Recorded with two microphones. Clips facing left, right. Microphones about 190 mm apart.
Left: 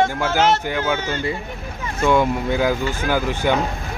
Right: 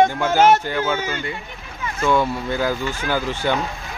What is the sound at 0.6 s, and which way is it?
Speech, 15° left (ahead or behind).